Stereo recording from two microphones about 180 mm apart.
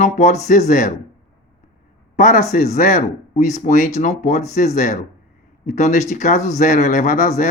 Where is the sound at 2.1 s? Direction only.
45° left (ahead or behind).